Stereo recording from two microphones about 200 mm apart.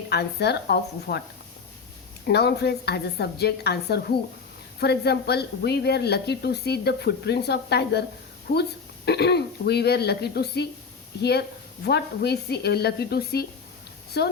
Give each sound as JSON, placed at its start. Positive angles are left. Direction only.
{"t": 0.1, "sound": "speech", "side_deg": 55}
{"t": 2.2, "sound": "a woman's voice", "side_deg": 55}